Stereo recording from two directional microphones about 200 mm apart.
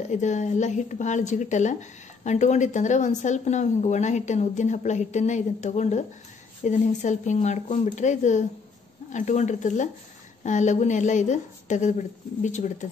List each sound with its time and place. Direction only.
0.1 s a woman's voice: 35° left (ahead or behind)